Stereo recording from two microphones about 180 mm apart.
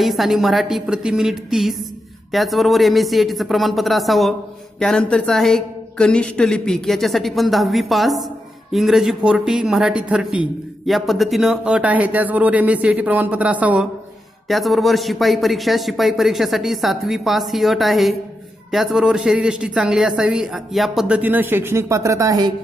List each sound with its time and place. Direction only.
0.0 s a man's voice: centre (ahead or behind); by 22.5 s 20° right (ahead or behind)